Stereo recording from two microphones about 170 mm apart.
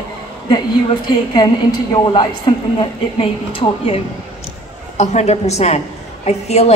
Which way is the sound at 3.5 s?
30° left (ahead or behind).